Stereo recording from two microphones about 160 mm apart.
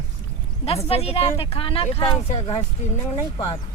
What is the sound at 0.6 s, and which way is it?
Speech, 40° left (ahead or behind).